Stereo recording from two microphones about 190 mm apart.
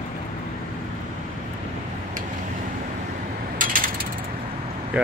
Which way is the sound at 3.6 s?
45° right (ahead or behind).